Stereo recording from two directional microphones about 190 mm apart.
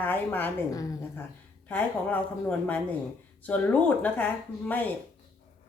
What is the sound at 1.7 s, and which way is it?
Speech, 5° left (ahead or behind).